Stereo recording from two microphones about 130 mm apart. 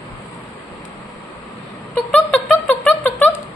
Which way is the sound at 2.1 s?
10° left (ahead or behind).